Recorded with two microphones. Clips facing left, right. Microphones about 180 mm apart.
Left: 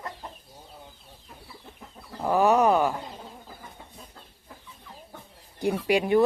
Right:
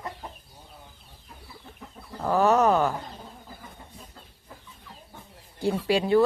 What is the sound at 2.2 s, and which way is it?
Speech, 15° left (ahead or behind).